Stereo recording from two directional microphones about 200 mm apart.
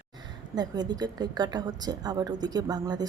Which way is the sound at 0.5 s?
20° right (ahead or behind).